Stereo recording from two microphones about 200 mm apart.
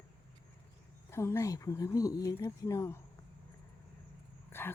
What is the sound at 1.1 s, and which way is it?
Speech, 15° left (ahead or behind).